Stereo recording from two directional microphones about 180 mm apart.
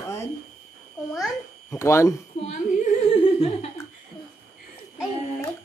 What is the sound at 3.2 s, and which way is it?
Speech, 35° left (ahead or behind).